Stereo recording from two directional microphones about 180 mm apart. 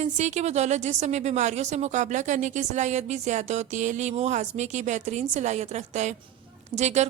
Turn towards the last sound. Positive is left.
turn(degrees=-40)  # may be behind; listen again after turning